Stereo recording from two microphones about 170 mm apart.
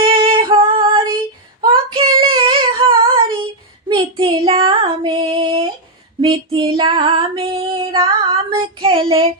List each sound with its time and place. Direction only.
0.0 s female singing: 30° right (ahead or behind)
1.6 s child singing: 30° right (ahead or behind)
6.7 s female singing: 30° right (ahead or behind)
8.3 s child singing: 30° right (ahead or behind)